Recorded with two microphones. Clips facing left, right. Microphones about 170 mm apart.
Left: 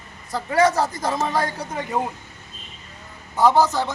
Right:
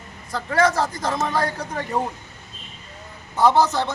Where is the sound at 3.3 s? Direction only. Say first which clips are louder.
Even; 10° left (ahead or behind).